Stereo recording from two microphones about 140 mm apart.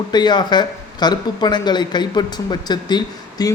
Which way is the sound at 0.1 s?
30° left (ahead or behind).